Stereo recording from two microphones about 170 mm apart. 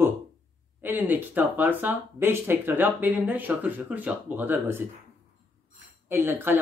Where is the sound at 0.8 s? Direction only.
10° right (ahead or behind).